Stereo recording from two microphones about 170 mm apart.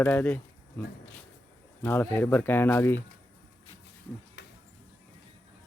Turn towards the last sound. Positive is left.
turn(degrees=80)